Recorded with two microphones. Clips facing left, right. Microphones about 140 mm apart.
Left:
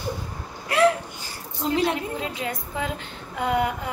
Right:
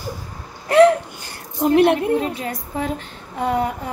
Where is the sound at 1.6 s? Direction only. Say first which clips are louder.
Right 9 dB; 60° right (ahead or behind).